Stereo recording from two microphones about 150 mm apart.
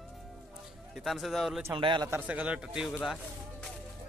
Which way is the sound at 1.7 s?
30° right (ahead or behind).